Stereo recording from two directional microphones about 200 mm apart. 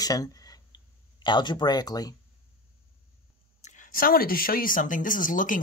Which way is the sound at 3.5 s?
40° left (ahead or behind).